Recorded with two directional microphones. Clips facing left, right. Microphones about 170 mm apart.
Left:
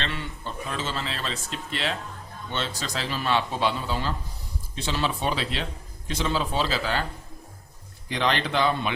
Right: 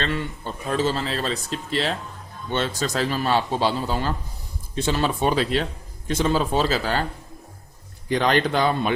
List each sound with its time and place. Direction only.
0.0 s a man's voice: 45° right (ahead or behind)
2.5 s a man's voice: 50° right (ahead or behind)
8.1 s a man's voice: 45° right (ahead or behind)